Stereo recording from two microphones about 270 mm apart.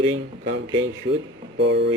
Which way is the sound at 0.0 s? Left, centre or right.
Right.